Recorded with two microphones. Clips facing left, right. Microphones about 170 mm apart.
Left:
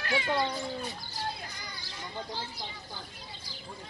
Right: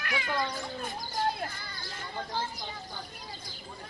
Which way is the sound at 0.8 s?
50° right (ahead or behind).